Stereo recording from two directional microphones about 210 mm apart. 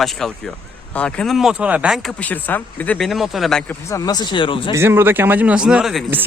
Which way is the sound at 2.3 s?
5° left (ahead or behind).